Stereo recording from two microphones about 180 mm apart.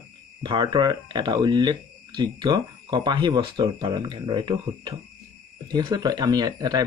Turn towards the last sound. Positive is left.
turn(degrees=-20)  # may be behind; listen again after turning